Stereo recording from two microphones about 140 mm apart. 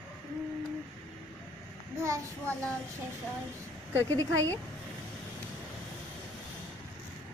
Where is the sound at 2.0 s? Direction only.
20° right (ahead or behind).